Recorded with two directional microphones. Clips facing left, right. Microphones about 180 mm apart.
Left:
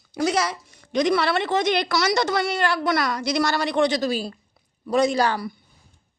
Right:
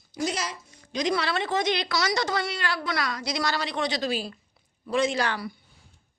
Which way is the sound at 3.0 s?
55° left (ahead or behind).